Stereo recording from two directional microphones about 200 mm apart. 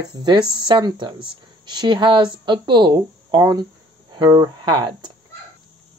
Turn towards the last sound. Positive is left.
turn(degrees=-25)  # may be behind; listen again after turning